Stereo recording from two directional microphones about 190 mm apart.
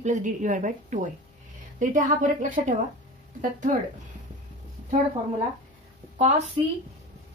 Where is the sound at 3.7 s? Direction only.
45° right (ahead or behind).